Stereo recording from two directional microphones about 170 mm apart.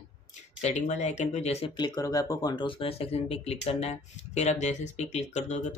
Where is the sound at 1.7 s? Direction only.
25° left (ahead or behind).